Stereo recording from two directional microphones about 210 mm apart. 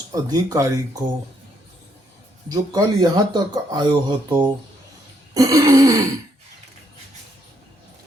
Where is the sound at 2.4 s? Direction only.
20° right (ahead or behind).